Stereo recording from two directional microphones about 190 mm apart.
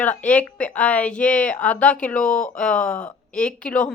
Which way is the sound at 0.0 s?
10° left (ahead or behind).